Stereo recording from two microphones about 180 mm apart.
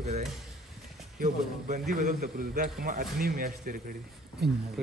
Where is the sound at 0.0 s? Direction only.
40° right (ahead or behind).